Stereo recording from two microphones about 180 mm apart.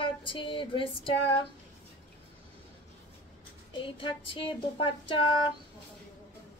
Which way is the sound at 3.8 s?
30° left (ahead or behind).